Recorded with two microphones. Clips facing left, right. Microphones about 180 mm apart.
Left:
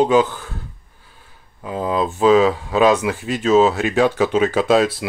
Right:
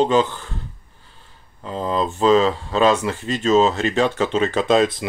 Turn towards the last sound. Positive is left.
turn(degrees=5)  # may be behind; listen again after turning